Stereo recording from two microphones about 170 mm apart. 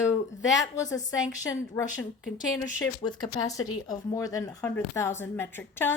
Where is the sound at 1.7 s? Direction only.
10° left (ahead or behind).